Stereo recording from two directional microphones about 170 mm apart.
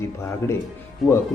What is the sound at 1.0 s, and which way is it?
Speech, centre (ahead or behind).